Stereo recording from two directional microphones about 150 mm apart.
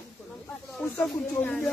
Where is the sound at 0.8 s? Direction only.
10° left (ahead or behind).